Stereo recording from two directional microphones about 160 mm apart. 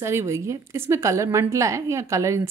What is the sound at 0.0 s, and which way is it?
A woman's voice, 15° right (ahead or behind).